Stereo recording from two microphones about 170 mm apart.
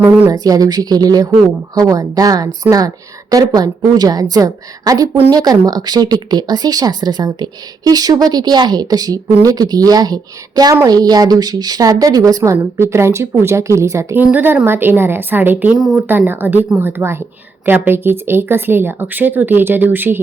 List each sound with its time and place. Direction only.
0.0 s a woman's voice: 10° right (ahead or behind)